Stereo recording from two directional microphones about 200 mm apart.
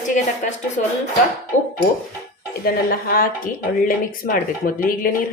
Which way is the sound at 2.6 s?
50° left (ahead or behind).